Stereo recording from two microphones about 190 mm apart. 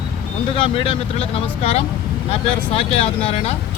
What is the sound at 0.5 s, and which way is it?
Speech, 25° left (ahead or behind).